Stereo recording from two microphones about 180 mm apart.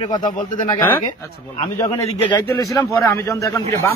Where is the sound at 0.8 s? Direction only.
10° left (ahead or behind).